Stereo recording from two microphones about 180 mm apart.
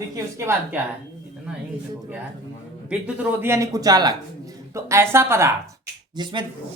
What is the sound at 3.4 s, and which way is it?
Speech, 15° right (ahead or behind).